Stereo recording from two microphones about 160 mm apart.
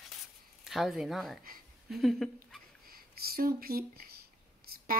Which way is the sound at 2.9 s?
70° right (ahead or behind).